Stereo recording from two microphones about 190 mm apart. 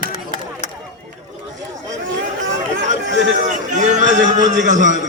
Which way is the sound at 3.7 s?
40° right (ahead or behind).